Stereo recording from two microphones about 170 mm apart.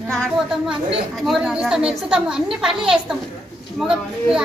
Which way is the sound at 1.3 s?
5° right (ahead or behind).